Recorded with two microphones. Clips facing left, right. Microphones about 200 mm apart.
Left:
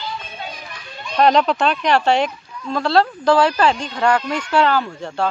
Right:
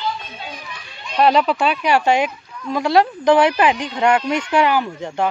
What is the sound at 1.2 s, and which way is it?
Speech, 5° right (ahead or behind).